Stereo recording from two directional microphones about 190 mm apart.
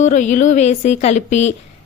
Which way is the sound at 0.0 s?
40° left (ahead or behind).